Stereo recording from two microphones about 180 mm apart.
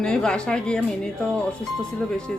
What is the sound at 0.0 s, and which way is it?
Speech, 5° left (ahead or behind).